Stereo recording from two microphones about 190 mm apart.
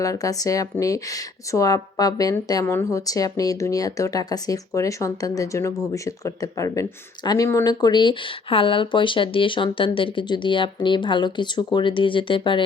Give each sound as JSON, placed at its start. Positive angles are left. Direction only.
{"t": 0.0, "sound": "speech", "side_deg": 20}